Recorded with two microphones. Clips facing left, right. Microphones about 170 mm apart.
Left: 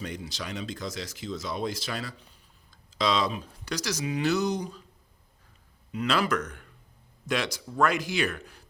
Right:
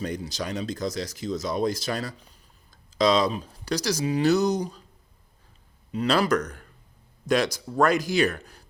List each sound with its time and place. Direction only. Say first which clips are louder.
0.0 s speech: right 6 dB; 40° right (ahead or behind)
5.9 s speech: right 4 dB; 35° right (ahead or behind)